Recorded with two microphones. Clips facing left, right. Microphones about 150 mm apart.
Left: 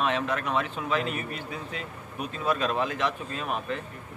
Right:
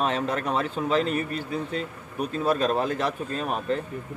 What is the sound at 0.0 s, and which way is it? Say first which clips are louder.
Speech: right 2 dB; 35° right (ahead or behind).